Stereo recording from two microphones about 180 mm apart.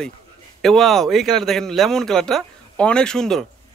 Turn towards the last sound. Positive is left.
turn(degrees=5)  # may be behind; listen again after turning